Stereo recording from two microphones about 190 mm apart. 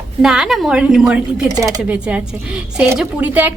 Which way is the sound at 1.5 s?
20° right (ahead or behind).